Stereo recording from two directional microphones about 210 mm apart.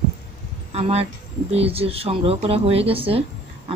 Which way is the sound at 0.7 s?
30° right (ahead or behind).